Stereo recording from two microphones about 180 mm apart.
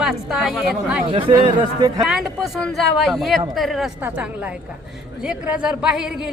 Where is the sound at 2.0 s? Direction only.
Centre (ahead or behind).